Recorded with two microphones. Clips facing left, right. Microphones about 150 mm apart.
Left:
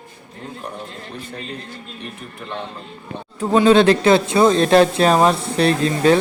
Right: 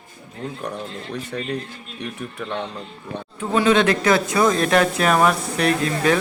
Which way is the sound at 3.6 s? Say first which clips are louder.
Left 5 dB; 30° left (ahead or behind).